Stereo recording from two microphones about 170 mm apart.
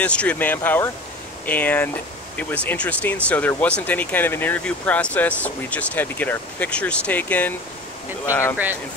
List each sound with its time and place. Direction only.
0.0 s speech: 10° left (ahead or behind)